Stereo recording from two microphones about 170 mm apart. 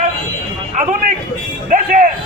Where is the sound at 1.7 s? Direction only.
50° right (ahead or behind).